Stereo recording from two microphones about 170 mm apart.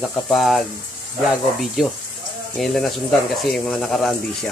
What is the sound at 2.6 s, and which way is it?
Speech, centre (ahead or behind).